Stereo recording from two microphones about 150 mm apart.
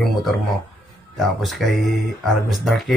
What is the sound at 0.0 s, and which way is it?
Speech, centre (ahead or behind).